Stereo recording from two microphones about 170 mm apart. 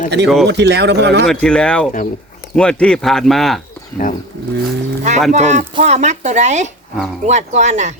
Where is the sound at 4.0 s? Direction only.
50° left (ahead or behind).